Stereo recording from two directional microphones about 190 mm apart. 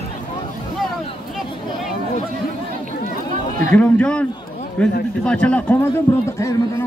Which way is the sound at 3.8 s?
5° left (ahead or behind).